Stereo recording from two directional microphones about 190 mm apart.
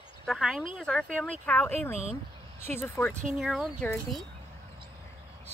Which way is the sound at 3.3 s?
5° right (ahead or behind).